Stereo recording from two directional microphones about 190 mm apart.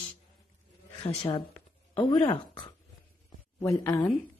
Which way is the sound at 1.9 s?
25° left (ahead or behind).